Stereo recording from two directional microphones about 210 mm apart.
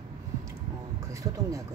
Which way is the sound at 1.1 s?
15° right (ahead or behind).